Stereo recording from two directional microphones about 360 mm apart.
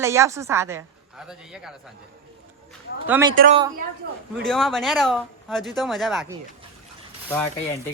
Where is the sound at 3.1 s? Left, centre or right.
Centre.